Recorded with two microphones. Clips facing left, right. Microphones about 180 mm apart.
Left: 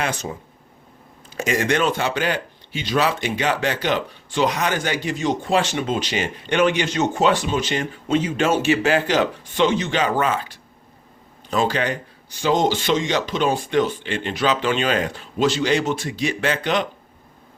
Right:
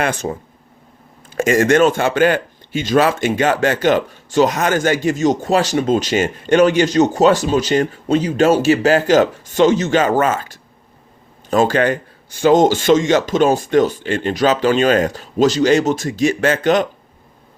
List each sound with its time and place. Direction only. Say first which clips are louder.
0.0 s speech: right 6 dB; 50° right (ahead or behind)